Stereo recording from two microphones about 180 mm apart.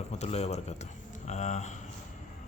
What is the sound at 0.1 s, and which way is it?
Speech, 35° left (ahead or behind).